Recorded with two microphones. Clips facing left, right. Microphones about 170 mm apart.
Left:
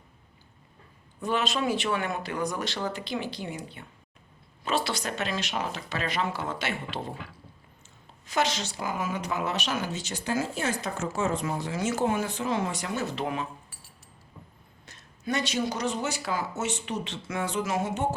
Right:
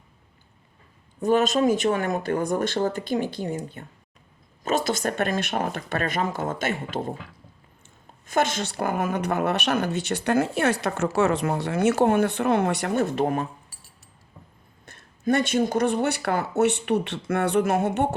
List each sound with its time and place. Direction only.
1.2 s speech: 45° right (ahead or behind)
8.3 s speech: 50° right (ahead or behind)
14.8 s speech: 55° right (ahead or behind)